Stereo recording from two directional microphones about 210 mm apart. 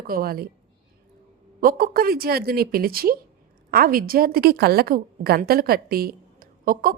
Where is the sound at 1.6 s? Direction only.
45° right (ahead or behind).